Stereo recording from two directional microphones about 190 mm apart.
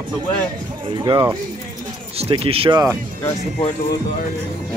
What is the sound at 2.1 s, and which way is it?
Speech, 30° right (ahead or behind).